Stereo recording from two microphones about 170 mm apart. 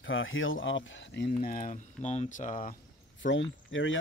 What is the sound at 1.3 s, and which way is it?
Speech, 55° left (ahead or behind).